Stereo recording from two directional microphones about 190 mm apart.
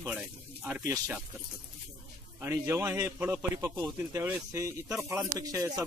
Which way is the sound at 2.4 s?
15° right (ahead or behind).